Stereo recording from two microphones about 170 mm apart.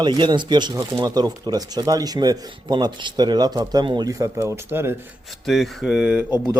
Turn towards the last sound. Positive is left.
turn(degrees=-5)  # may be behind; listen again after turning